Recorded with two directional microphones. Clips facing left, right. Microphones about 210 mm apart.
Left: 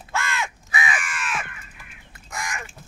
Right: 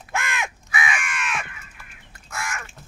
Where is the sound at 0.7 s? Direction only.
35° left (ahead or behind).